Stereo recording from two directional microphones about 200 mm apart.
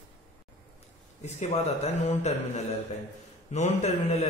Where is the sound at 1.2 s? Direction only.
35° left (ahead or behind).